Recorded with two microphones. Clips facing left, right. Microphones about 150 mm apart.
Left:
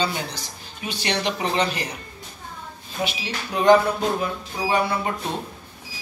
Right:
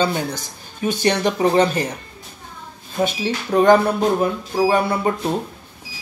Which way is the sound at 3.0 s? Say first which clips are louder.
Right 7 dB; 50° right (ahead or behind).